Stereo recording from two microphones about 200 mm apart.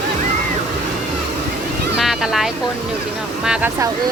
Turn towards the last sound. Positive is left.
turn(degrees=-5)  # may be behind; listen again after turning